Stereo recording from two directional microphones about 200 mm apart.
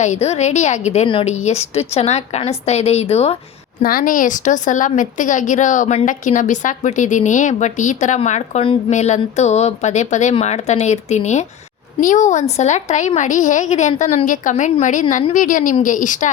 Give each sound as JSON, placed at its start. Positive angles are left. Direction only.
{"t": 0.0, "sound": "a woman's voice", "side_deg": 35}
{"t": 3.8, "sound": "a woman's voice", "side_deg": 45}